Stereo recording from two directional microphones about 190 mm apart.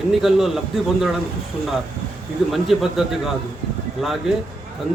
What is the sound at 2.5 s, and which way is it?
Speech, centre (ahead or behind).